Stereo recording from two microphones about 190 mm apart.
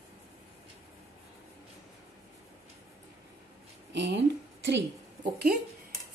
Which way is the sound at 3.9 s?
65° right (ahead or behind).